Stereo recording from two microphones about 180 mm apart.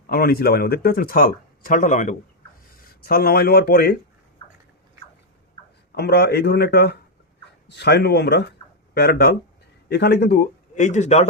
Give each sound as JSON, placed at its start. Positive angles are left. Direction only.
{"t": 0.1, "sound": "speech", "side_deg": 55}
{"t": 3.0, "sound": "speech", "side_deg": 55}
{"t": 5.9, "sound": "speech", "side_deg": 65}